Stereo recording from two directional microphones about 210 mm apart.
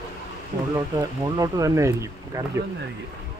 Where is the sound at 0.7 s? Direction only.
15° right (ahead or behind).